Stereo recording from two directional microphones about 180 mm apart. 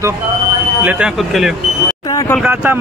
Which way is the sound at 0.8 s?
5° right (ahead or behind).